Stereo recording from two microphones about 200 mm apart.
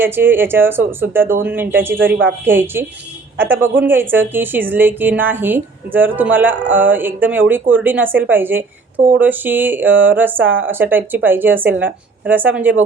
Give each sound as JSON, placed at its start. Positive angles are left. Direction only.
{"t": 0.0, "sound": "a woman's voice", "side_deg": -10}